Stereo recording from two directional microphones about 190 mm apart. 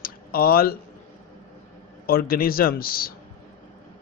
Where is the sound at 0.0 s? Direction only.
50° left (ahead or behind).